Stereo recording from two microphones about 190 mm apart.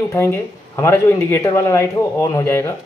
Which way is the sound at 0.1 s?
15° left (ahead or behind).